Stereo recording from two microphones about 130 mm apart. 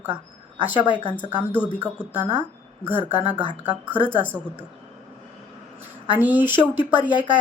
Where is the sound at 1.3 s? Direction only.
15° right (ahead or behind).